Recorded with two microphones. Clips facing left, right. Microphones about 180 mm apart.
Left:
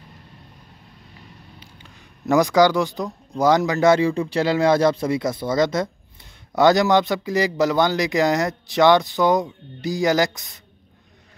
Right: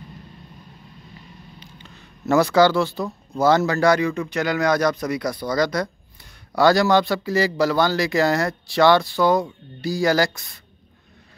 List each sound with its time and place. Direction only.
1.6 s speech: 10° left (ahead or behind)